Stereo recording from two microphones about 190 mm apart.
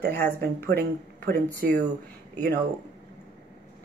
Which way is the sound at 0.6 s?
55° right (ahead or behind).